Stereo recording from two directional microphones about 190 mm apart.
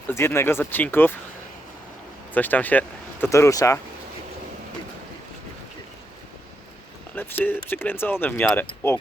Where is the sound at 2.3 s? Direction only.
10° left (ahead or behind).